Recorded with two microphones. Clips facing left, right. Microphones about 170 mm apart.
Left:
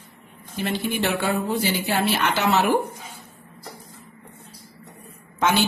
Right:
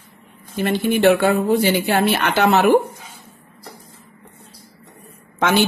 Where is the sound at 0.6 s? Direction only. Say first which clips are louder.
Right 9 dB; 60° right (ahead or behind).